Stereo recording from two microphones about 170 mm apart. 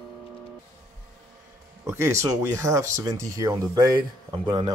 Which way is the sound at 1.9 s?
15° right (ahead or behind).